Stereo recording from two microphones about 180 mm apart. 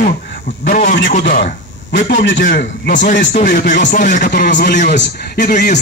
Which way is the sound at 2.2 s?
80° left.